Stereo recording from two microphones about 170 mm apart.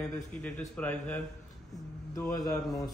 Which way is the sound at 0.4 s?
10° left (ahead or behind).